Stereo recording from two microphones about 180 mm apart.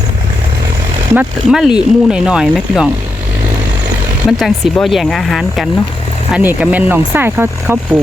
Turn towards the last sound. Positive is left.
turn(degrees=-10)  # may be behind; listen again after turning